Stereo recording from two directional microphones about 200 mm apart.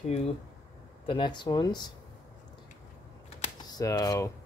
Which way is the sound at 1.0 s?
25° left (ahead or behind).